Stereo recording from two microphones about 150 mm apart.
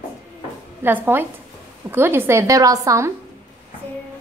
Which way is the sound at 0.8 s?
15° right (ahead or behind).